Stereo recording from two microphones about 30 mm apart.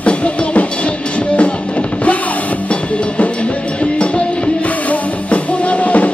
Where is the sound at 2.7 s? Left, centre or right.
Left.